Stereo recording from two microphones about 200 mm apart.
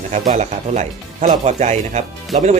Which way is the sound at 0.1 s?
35° right (ahead or behind).